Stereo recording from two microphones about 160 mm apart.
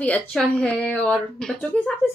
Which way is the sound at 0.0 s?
10° left (ahead or behind).